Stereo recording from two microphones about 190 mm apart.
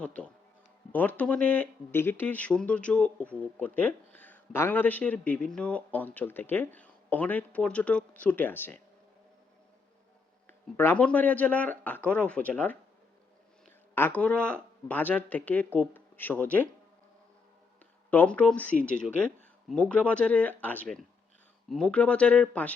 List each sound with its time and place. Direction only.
0.0 s speech: 5° left (ahead or behind)
10.4 s speech: 10° left (ahead or behind)
13.9 s speech: 10° left (ahead or behind)
18.1 s speech: 10° left (ahead or behind)